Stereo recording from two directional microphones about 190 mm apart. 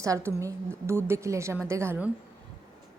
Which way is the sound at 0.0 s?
15° right (ahead or behind).